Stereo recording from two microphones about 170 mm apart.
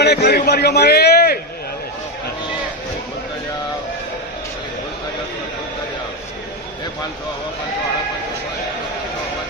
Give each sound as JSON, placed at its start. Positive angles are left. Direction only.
{"t": 0.0, "sound": "a man's voice", "side_deg": 70}